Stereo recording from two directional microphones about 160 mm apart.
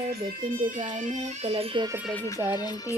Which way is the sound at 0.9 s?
50° right (ahead or behind).